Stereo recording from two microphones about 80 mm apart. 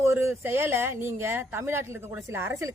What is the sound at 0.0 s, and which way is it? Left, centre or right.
Speech, right.